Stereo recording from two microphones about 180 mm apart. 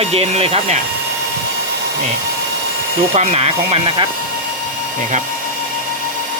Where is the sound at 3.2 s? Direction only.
35° right (ahead or behind).